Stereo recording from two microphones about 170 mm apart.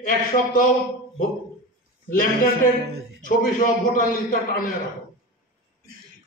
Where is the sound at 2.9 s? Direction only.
70° right (ahead or behind).